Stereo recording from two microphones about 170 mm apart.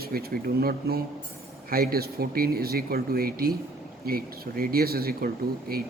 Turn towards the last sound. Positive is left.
turn(degrees=-60)  # may be behind; listen again after turning